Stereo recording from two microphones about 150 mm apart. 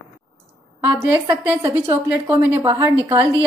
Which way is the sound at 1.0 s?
15° right (ahead or behind).